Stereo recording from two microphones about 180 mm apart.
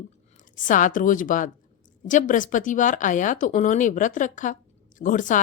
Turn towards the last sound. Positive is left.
turn(degrees=45)  # may be behind; listen again after turning